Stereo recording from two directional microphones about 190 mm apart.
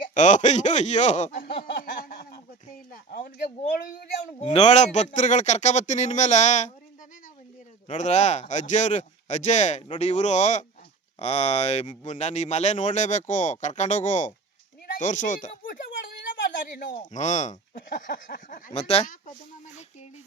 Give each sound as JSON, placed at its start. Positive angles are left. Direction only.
{"t": 0.1, "sound": "speech", "side_deg": 40}
{"t": 1.5, "sound": "a sound", "side_deg": 55}
{"t": 4.4, "sound": "speech", "side_deg": 35}
{"t": 7.9, "sound": "speech", "side_deg": 40}
{"t": 16.3, "sound": "a sound", "side_deg": 45}
{"t": 17.0, "sound": "speech", "side_deg": 40}